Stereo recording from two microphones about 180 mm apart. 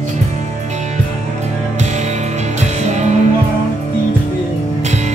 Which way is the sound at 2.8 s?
40° right (ahead or behind).